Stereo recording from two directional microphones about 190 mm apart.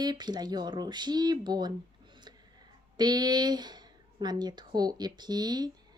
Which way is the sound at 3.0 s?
20° right (ahead or behind).